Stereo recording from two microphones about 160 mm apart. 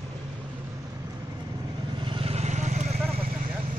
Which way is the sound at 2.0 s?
35° right (ahead or behind).